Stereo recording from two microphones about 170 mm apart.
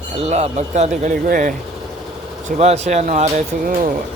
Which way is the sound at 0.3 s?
40° right (ahead or behind).